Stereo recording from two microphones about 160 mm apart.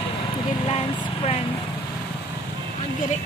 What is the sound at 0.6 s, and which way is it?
Vehicle, 35° left (ahead or behind).